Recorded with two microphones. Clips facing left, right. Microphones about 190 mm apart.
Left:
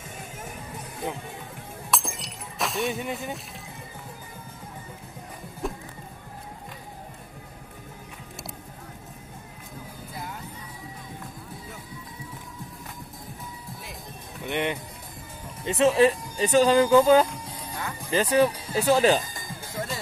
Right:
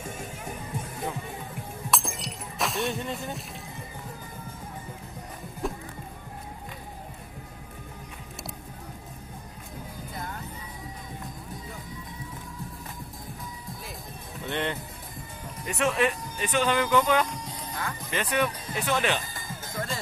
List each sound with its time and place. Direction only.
1.9 s breaking: centre (ahead or behind)
14.4 s music: 15° left (ahead or behind)
15.6 s speech: 30° left (ahead or behind)
17.7 s music: 10° left (ahead or behind)
18.1 s speech: 35° left (ahead or behind)
19.3 s music: 15° left (ahead or behind)